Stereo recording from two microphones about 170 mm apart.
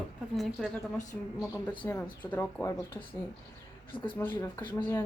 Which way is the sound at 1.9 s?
10° left (ahead or behind).